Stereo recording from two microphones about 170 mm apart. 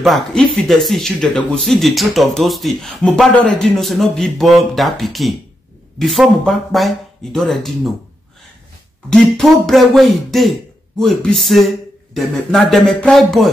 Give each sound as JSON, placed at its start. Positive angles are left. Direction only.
{"t": 0.0, "sound": "speech", "side_deg": 0}
{"t": 9.1, "sound": "speech", "side_deg": 0}